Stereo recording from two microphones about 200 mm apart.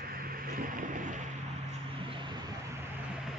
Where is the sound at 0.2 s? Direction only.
45° right (ahead or behind).